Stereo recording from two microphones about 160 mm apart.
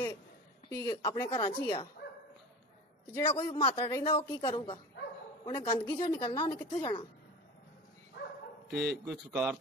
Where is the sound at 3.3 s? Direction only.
35° left (ahead or behind).